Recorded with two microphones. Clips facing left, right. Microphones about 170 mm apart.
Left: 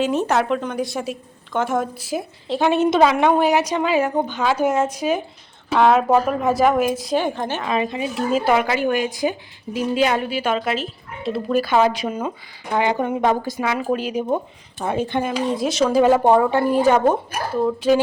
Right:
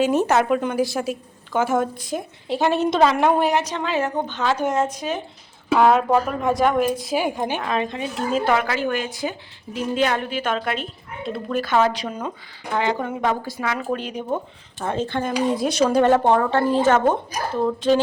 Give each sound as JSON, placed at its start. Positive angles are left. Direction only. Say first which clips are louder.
{"t": 0.0, "sound": "speech", "louder": "right 1 dB", "side_deg": 0}
{"t": 3.6, "sound": "a woman's voice", "louder": "left 4 dB", "side_deg": 10}
{"t": 5.7, "sound": "speech", "louder": "left 1 dB", "side_deg": 0}
{"t": 7.1, "sound": "a woman's voice", "louder": "left 1 dB", "side_deg": -10}
{"t": 7.6, "sound": "a woman's voice", "louder": "left 2 dB", "side_deg": 5}
{"t": 15.4, "sound": "a woman's voice", "louder": "right 2 dB", "side_deg": 0}